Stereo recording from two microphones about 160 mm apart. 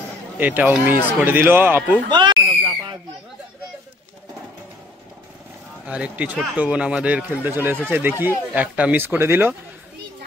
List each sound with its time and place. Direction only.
0.4 s speech: 10° right (ahead or behind)
2.0 s speech: 30° right (ahead or behind)
5.9 s speech: 10° right (ahead or behind)